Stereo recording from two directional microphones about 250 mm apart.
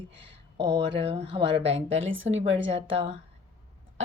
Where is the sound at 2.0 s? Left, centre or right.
Right.